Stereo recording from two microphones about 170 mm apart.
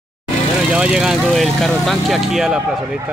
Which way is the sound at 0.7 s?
5° right (ahead or behind).